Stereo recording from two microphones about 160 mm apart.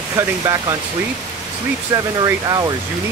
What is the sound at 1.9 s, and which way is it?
Speech, 25° right (ahead or behind).